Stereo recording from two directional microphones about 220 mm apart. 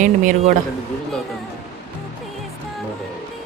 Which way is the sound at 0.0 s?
35° right (ahead or behind).